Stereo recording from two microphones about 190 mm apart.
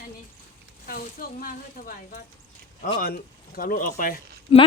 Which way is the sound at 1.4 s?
45° left (ahead or behind).